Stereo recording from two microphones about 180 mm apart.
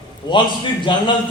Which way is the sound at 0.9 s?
25° left (ahead or behind).